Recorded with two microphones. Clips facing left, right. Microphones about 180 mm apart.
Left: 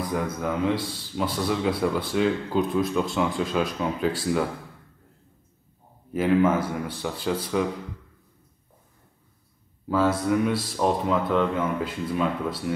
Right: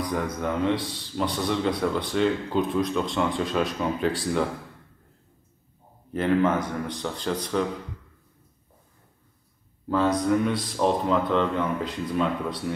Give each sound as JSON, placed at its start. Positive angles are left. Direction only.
{"t": 0.0, "sound": "a man's voice", "side_deg": 0}
{"t": 6.1, "sound": "a man's voice", "side_deg": 5}
{"t": 9.8, "sound": "a man's voice", "side_deg": 5}